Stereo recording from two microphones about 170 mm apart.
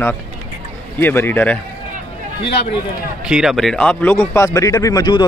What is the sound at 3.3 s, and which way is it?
Speech, centre (ahead or behind).